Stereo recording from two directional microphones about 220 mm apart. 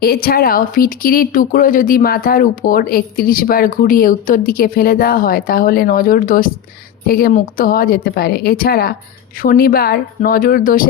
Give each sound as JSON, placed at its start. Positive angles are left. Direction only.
{"t": 0.0, "sound": "speech", "side_deg": 40}